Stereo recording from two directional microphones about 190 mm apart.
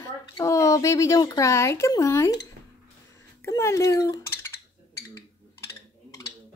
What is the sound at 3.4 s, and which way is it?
Dishes, 15° left (ahead or behind).